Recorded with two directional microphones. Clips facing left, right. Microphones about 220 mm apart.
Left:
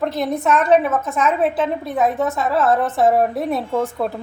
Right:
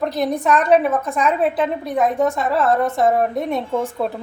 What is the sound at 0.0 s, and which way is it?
A woman's voice, centre (ahead or behind).